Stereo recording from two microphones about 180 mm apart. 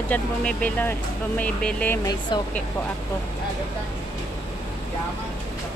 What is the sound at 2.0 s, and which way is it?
Speech, 25° left (ahead or behind).